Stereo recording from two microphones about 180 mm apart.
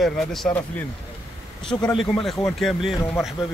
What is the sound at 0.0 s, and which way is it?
Speech, centre (ahead or behind).